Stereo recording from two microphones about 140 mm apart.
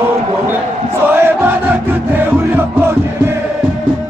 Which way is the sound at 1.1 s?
15° right (ahead or behind).